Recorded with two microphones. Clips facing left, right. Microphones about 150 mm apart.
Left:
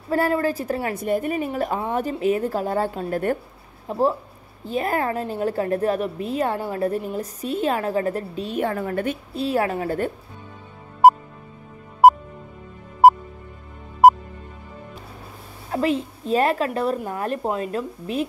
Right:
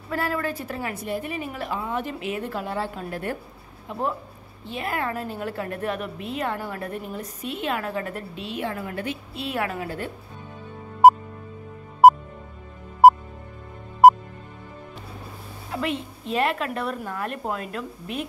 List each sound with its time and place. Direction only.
0.1 s a woman's voice: 35° left (ahead or behind)
1.0 s a woman's voice: 50° left (ahead or behind)
12.0 s music: centre (ahead or behind)
15.7 s a woman's voice: 35° left (ahead or behind)